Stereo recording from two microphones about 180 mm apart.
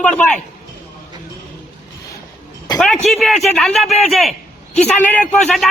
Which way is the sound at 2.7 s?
5° left (ahead or behind).